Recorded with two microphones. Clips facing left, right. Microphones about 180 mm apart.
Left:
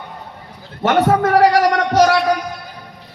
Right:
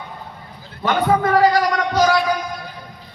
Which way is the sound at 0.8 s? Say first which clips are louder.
Left 3 dB; 75° left (ahead or behind).